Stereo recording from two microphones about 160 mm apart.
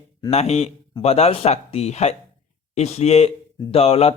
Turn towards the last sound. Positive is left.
turn(degrees=40)  # may be behind; listen again after turning